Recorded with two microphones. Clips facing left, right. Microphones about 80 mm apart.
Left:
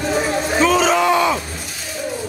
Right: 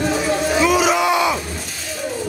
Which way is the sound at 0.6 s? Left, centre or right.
Centre.